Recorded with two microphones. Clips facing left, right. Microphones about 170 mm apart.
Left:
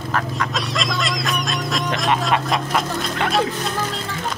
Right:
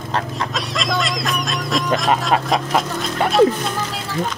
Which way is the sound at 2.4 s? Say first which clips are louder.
Right 2 dB; centre (ahead or behind).